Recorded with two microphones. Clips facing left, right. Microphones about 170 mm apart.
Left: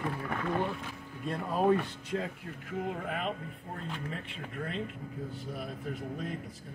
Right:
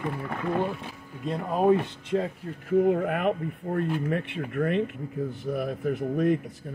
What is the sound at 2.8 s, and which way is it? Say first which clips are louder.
Speech: right 11 dB; 60° right (ahead or behind).